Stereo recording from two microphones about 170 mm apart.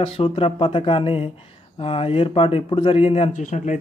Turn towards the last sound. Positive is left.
turn(degrees=45)  # may be behind; listen again after turning